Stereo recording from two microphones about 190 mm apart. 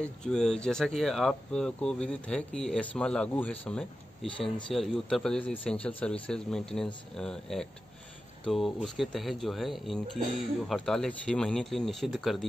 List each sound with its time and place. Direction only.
0.0 s speech: 5° left (ahead or behind)